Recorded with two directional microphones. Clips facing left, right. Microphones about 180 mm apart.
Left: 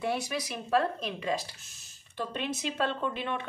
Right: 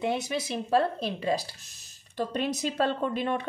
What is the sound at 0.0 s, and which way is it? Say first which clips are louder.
Speech: right 3 dB; 20° right (ahead or behind).